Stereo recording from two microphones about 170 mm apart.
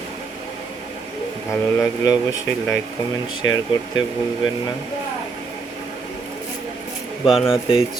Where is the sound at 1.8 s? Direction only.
20° left (ahead or behind).